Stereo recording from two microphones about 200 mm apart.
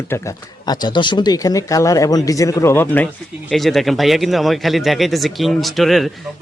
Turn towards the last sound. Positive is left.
turn(degrees=0)  # may be behind; listen again after turning